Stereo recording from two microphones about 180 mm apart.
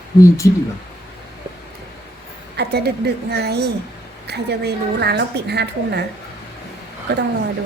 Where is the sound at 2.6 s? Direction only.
65° right (ahead or behind).